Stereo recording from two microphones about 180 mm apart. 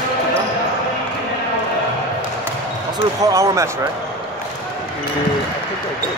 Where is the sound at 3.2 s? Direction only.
15° right (ahead or behind).